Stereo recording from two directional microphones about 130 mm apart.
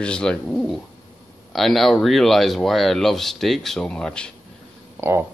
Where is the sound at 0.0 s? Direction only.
5° left (ahead or behind).